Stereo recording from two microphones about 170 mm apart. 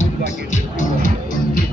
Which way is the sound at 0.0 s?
45° left (ahead or behind).